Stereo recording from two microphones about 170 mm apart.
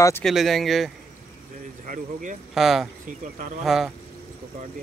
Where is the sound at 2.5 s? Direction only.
Centre (ahead or behind).